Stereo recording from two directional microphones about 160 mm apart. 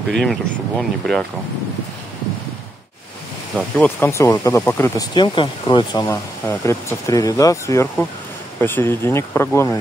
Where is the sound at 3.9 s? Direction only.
15° left (ahead or behind).